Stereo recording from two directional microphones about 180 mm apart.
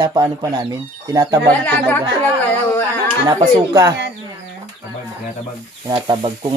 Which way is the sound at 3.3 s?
25° right (ahead or behind).